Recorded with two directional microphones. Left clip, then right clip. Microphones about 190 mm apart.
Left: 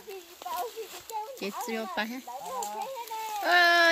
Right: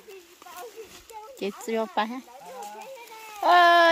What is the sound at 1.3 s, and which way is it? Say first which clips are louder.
Speech: right 10 dB; 15° right (ahead or behind).